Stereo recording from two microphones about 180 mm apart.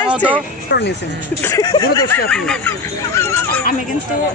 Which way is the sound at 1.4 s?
15° left (ahead or behind).